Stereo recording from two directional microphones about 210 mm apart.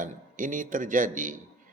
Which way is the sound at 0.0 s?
40° right (ahead or behind).